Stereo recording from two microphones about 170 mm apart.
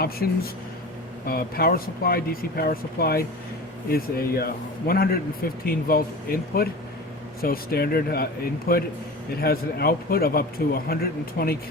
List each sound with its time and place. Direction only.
1.3 s speech: 60° left (ahead or behind)